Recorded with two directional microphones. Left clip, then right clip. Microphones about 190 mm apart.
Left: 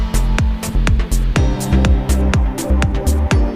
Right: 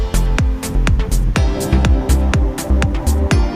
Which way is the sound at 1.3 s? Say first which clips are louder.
Even; centre (ahead or behind).